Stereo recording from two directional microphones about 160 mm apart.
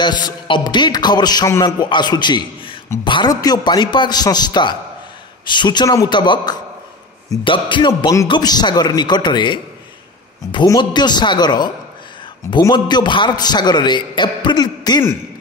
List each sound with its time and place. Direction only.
0.0 s a man's voice: 30° left (ahead or behind)